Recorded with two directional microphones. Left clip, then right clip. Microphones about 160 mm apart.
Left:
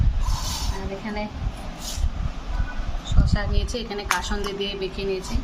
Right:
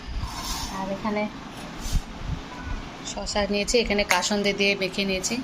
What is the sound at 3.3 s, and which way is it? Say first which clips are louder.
A woman's voice: right 9 dB; 15° right (ahead or behind).